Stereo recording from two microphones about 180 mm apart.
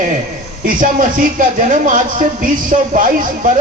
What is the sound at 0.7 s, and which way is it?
Speech, 50° right (ahead or behind).